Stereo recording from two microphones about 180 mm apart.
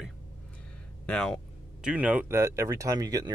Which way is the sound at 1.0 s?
5° left (ahead or behind).